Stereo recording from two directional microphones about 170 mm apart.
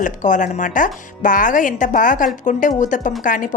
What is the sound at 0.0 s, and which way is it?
A woman's voice, 50° left (ahead or behind).